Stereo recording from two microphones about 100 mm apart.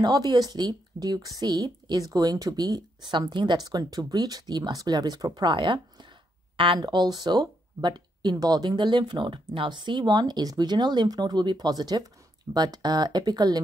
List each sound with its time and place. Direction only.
0.0 s speech: 40° right (ahead or behind)
6.5 s speech: 60° right (ahead or behind)
6.8 s speech: 45° right (ahead or behind)